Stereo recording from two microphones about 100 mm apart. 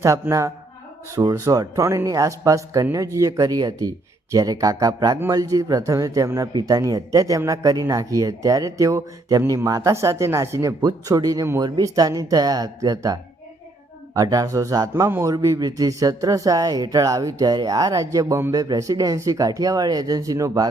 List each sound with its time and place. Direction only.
0.0 s speech: 30° right (ahead or behind)
6.5 s speech: 45° right (ahead or behind)